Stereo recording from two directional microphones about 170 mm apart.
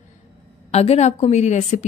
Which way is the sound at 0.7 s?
40° left (ahead or behind).